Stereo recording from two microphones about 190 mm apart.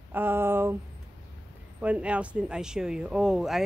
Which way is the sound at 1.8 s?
5° right (ahead or behind).